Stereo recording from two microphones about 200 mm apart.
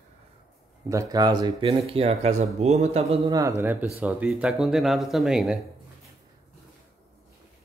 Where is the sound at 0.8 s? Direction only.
15° right (ahead or behind).